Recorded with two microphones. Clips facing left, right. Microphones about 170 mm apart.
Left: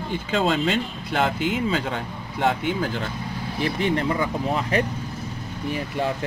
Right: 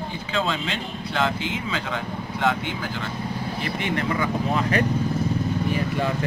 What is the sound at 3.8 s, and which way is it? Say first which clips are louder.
Speech: left 1 dB; 30° left (ahead or behind).